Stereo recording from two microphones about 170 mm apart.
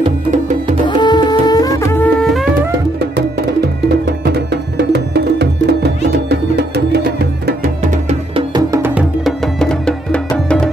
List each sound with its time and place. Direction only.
0.8 s music: 25° left (ahead or behind)
3.0 s music: 75° right (ahead or behind)
8.1 s music: 30° right (ahead or behind)
8.7 s music: 15° right (ahead or behind)
9.2 s music: 5° left (ahead or behind)